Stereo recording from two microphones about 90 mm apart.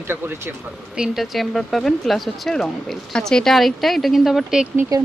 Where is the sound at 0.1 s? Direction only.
25° right (ahead or behind).